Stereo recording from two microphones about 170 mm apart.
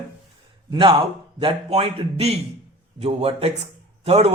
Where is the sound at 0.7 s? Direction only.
30° right (ahead or behind).